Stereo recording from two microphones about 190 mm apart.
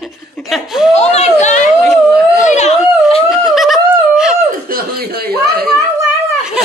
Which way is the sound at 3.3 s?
Centre (ahead or behind).